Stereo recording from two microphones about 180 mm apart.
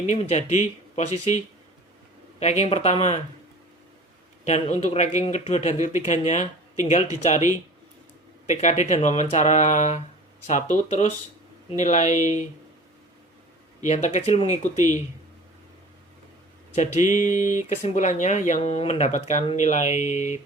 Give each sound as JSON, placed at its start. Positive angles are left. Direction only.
{"t": 0.0, "sound": "speech", "side_deg": 40}
{"t": 2.4, "sound": "speech", "side_deg": 35}
{"t": 4.4, "sound": "speech", "side_deg": 35}
{"t": 8.4, "sound": "speech", "side_deg": 40}
{"t": 13.8, "sound": "speech", "side_deg": 40}
{"t": 16.7, "sound": "a sound", "side_deg": 40}
{"t": 17.8, "sound": "speech", "side_deg": 40}